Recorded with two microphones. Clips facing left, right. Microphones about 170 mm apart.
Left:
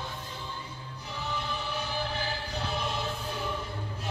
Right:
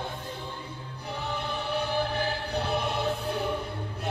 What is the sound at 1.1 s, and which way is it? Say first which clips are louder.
Choir: right 2 dB; 60° right (ahead or behind).